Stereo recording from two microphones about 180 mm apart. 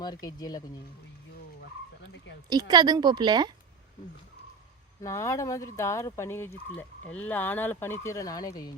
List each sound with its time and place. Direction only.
0.0 s speech: 20° left (ahead or behind)
2.5 s a woman's voice: 25° right (ahead or behind)
5.0 s speech: 20° left (ahead or behind)